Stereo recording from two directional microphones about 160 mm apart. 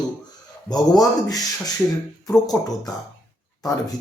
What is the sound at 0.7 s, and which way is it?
Speech, 25° left (ahead or behind).